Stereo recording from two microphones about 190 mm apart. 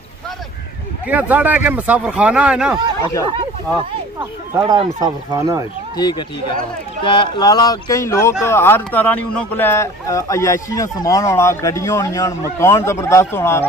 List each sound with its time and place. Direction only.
1.0 s speech: 10° right (ahead or behind)
3.0 s speech: 15° left (ahead or behind)
4.2 s speech: 20° right (ahead or behind)
5.9 s speech: 20° left (ahead or behind)